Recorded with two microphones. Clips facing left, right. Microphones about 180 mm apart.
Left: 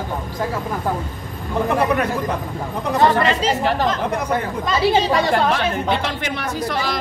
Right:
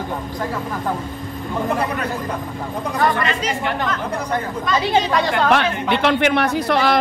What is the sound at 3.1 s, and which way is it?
Speech, 35° left (ahead or behind).